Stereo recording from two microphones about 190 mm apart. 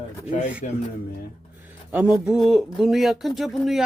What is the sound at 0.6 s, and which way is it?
Speech, 40° left (ahead or behind).